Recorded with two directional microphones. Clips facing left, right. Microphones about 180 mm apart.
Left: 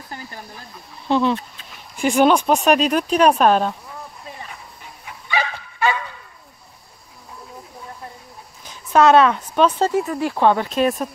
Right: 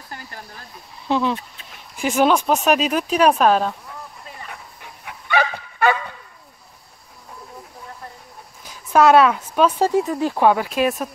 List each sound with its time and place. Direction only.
1.0 s speech: 5° right (ahead or behind)
5.0 s dog: 55° right (ahead or behind)
8.6 s a sound: 5° right (ahead or behind)
10.3 s speech: 10° right (ahead or behind)